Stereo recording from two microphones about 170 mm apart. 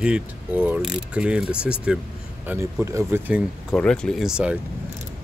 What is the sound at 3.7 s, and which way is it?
Speech, 5° left (ahead or behind).